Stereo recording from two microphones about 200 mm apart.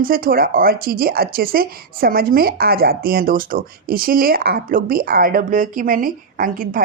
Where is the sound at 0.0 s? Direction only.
45° right (ahead or behind).